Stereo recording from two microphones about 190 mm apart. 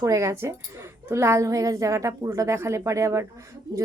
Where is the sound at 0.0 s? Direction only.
15° right (ahead or behind).